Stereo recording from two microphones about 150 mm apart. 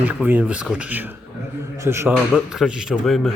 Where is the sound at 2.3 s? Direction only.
Centre (ahead or behind).